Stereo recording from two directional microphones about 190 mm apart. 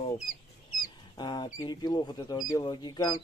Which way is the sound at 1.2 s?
20° left (ahead or behind).